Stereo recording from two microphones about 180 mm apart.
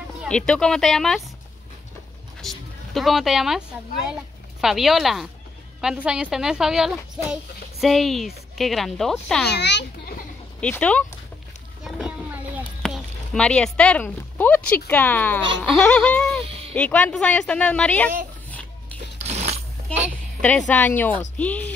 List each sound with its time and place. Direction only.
0.2 s speech: 5° left (ahead or behind)
2.4 s a sound: centre (ahead or behind)
4.0 s speech: 5° right (ahead or behind)
9.5 s a child's voice: 70° left (ahead or behind)
10.6 s speech: 5° left (ahead or behind)
11.8 s a sound: 5° right (ahead or behind)
12.8 s speech: centre (ahead or behind)
19.1 s a sound: 35° right (ahead or behind)
20.4 s speech: 5° left (ahead or behind)